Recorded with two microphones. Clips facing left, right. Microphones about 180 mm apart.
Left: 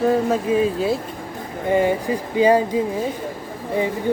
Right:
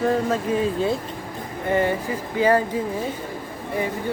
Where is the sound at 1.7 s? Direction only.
15° left (ahead or behind).